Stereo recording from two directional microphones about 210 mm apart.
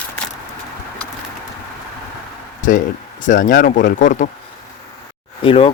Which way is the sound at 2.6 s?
40° left (ahead or behind).